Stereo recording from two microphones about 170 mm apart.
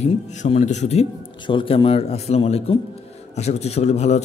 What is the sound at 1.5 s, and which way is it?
A man's voice, 30° left (ahead or behind).